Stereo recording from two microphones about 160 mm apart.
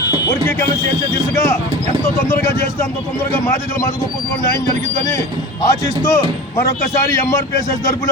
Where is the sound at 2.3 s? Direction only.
15° left (ahead or behind).